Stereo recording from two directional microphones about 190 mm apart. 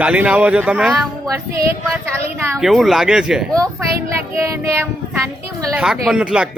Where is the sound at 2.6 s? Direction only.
Centre (ahead or behind).